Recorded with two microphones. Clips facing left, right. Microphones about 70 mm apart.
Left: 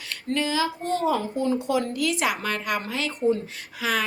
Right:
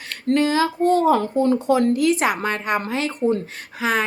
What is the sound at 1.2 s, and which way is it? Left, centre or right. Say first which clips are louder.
A woman's voice: right 6 dB; right.